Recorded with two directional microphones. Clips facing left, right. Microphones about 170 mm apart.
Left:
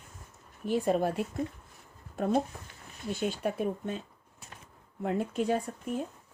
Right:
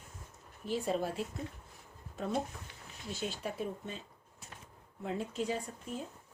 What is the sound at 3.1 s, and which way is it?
Speech, 55° left (ahead or behind).